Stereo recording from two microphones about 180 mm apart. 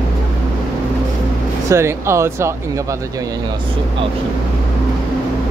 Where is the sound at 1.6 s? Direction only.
15° right (ahead or behind).